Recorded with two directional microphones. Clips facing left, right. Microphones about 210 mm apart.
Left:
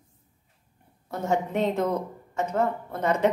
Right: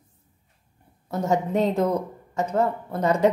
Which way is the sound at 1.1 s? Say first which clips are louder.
Right 3 dB; 40° right (ahead or behind).